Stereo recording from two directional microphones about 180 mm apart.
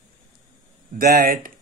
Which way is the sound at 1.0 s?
55° right (ahead or behind).